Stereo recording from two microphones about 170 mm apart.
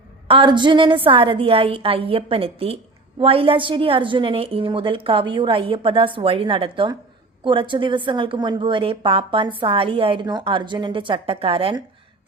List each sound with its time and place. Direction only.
0.3 s a woman's voice: 30° right (ahead or behind)